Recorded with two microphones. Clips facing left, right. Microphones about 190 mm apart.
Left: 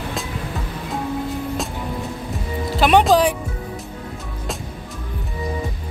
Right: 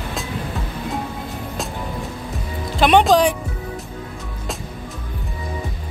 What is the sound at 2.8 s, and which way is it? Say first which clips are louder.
Music: right 1 dB; 5° left (ahead or behind).